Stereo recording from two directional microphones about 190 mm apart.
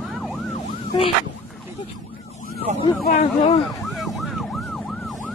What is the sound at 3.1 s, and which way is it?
Speech, 35° left (ahead or behind).